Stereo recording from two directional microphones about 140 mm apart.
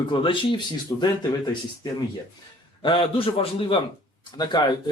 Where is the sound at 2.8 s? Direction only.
40° left (ahead or behind).